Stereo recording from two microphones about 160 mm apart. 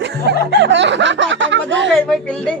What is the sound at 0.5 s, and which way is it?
Speech, 90° right.